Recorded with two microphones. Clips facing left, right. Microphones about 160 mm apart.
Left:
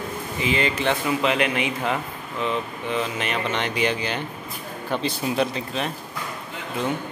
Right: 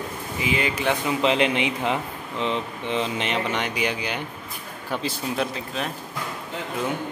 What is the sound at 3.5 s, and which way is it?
Speech, 10° right (ahead or behind).